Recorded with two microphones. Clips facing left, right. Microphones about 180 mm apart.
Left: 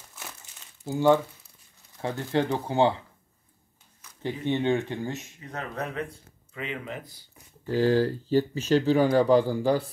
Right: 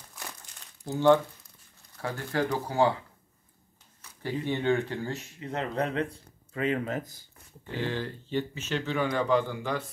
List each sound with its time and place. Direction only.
0.1 s crumpling: 5° left (ahead or behind)
2.0 s speech: 25° left (ahead or behind)
4.2 s speech: 20° left (ahead or behind)
5.4 s speech: 25° right (ahead or behind); by 7.2 s 45° right (ahead or behind)
7.6 s speech: 35° left (ahead or behind)